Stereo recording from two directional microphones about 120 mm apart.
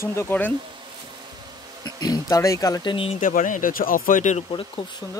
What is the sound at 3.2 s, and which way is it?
Speech, 90° left.